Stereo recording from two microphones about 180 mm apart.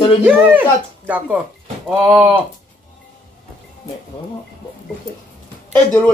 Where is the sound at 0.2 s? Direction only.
10° right (ahead or behind).